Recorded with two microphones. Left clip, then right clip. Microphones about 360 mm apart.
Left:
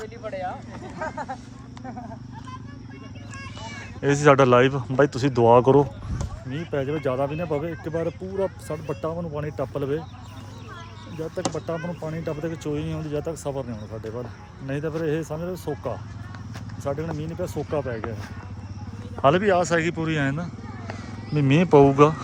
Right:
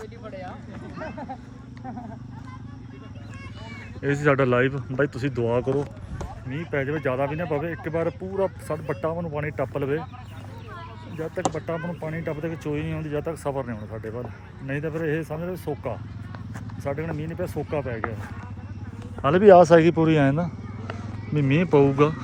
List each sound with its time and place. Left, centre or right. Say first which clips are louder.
0.3 s vehicle: left 8 dB; left
4.0 s speech: left 5 dB; centre
8.0 s speech: right 1 dB; centre
8.7 s speech: right 2 dB; centre
11.5 s speech: even; centre
15.5 s speech: even; centre
16.8 s speech: left 1 dB; centre
19.4 s speech: right 8 dB; centre
21.3 s speech: left 3 dB; centre